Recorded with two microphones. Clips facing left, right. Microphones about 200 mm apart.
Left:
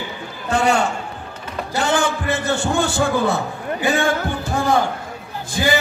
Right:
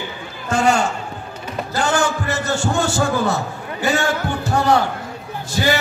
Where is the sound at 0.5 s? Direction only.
60° left (ahead or behind).